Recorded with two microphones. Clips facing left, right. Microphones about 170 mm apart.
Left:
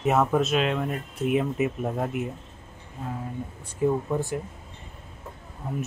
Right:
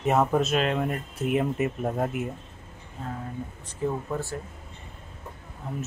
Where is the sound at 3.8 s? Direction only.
15° left (ahead or behind).